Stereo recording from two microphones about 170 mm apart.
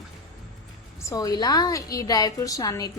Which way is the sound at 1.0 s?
20° left (ahead or behind).